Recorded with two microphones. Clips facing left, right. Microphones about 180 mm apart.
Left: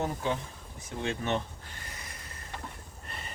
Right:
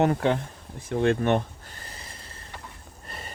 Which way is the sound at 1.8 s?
30° right (ahead or behind).